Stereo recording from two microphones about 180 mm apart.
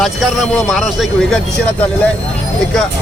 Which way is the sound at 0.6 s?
Centre (ahead or behind).